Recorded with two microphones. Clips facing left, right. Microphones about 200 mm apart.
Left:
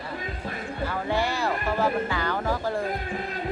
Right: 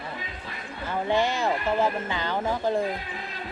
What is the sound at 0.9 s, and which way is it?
Speech, 20° right (ahead or behind).